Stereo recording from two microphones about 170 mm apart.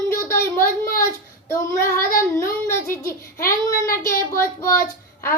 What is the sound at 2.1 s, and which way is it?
Child singing, 55° left (ahead or behind).